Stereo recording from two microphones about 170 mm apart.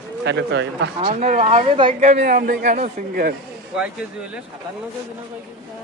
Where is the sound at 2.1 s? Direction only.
65° right (ahead or behind).